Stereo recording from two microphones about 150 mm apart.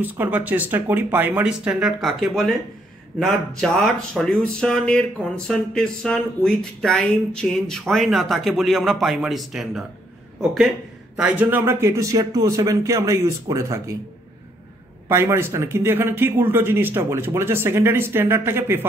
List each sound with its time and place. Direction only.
0.0 s a man's voice: 10° right (ahead or behind)
11.1 s a man's voice: 10° right (ahead or behind)
15.0 s a man's voice: 15° right (ahead or behind)